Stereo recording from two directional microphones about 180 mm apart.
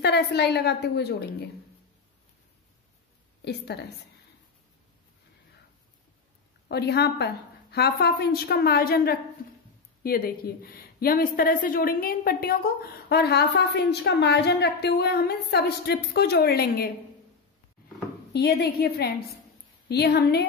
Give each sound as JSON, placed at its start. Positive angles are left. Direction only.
{"t": 0.0, "sound": "a woman's voice", "side_deg": 65}
{"t": 6.7, "sound": "a woman's voice", "side_deg": 65}
{"t": 18.3, "sound": "a woman's voice", "side_deg": 65}